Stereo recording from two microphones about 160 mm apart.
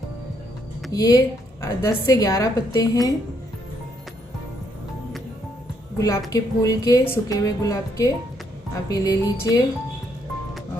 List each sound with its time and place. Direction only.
0.9 s a woman's voice: 25° left (ahead or behind)
5.9 s a woman's voice: 20° left (ahead or behind)